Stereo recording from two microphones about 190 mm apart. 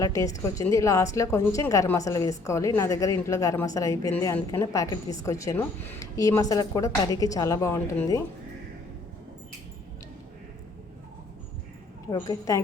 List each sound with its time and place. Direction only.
0.0 s a woman's voice: 15° left (ahead or behind)
12.1 s a woman's voice: 15° left (ahead or behind)